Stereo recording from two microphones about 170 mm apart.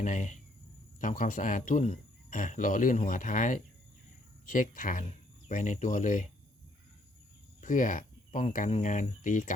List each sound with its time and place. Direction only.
0.0 s speech: 45° left (ahead or behind)
7.6 s speech: 50° left (ahead or behind)